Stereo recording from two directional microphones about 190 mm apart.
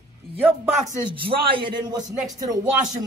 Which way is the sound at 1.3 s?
25° right (ahead or behind).